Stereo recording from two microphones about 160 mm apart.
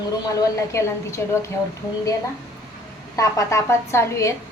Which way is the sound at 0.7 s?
20° left (ahead or behind).